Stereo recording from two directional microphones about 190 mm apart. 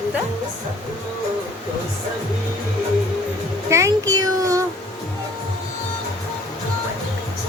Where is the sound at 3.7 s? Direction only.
15° right (ahead or behind).